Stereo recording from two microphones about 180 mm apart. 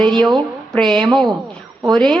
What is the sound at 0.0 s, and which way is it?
A woman's voice, 5° left (ahead or behind).